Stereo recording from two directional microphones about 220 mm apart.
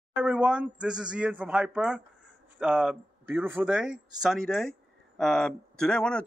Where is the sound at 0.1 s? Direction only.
5° right (ahead or behind).